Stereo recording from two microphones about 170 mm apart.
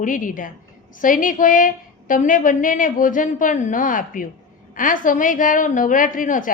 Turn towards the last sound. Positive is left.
turn(degrees=50)  # may be behind; listen again after turning